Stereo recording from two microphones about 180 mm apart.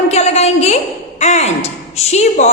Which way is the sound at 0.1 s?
35° left (ahead or behind).